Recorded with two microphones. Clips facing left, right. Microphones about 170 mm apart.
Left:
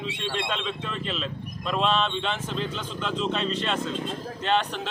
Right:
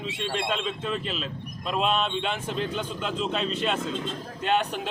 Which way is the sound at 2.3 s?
50° right (ahead or behind).